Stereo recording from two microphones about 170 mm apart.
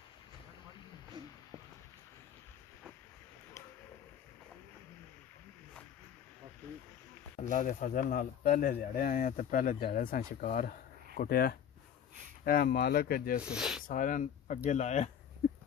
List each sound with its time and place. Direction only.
7.5 s speech: 50° left (ahead or behind)
13.5 s speech: 5° right (ahead or behind)
13.8 s speech: 50° left (ahead or behind)